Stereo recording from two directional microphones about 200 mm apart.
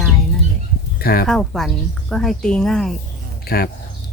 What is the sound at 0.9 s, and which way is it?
Speech, 50° left (ahead or behind).